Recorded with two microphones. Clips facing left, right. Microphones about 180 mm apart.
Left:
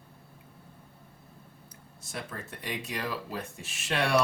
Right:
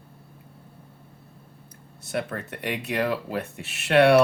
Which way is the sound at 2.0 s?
65° right (ahead or behind).